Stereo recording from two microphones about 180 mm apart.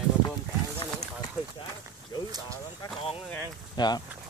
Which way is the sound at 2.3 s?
20° right (ahead or behind).